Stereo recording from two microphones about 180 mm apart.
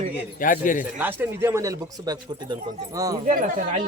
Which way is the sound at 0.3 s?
50° left (ahead or behind).